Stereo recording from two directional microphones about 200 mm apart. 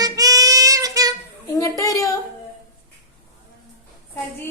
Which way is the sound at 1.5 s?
15° left (ahead or behind).